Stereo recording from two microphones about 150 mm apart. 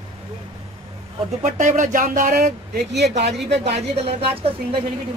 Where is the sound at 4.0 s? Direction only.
40° right (ahead or behind).